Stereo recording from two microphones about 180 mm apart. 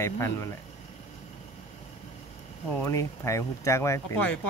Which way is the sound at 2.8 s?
15° left (ahead or behind).